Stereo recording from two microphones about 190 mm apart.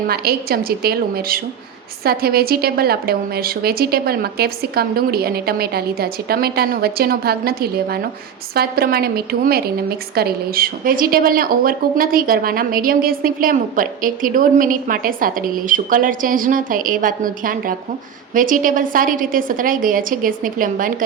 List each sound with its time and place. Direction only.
0.1 s a woman's voice: 55° right (ahead or behind)